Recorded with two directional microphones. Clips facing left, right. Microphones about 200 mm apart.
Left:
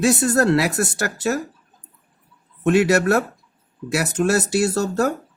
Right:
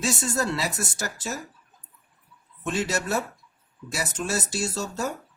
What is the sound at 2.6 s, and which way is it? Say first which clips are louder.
Speech: left 11 dB; 65° left (ahead or behind).